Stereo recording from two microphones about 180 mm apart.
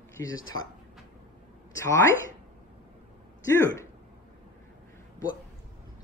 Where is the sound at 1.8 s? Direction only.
15° left (ahead or behind).